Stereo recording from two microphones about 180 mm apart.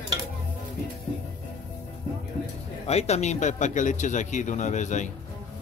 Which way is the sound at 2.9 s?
35° left (ahead or behind).